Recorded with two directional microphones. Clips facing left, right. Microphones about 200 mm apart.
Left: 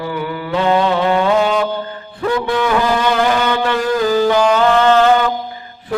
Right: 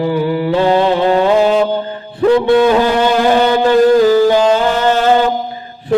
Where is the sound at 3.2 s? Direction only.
30° right (ahead or behind).